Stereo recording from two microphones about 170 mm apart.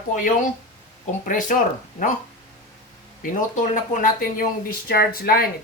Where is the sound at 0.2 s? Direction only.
50° left (ahead or behind).